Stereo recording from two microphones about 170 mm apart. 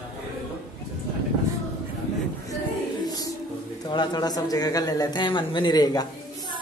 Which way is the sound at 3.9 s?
25° left (ahead or behind).